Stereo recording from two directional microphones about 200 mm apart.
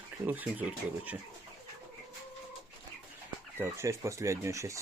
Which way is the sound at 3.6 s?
15° right (ahead or behind).